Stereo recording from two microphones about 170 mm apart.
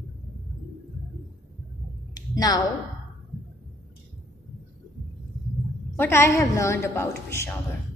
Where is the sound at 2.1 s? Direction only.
20° left (ahead or behind).